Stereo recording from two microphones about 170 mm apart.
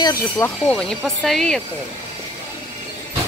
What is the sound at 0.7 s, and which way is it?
Speech, 5° left (ahead or behind).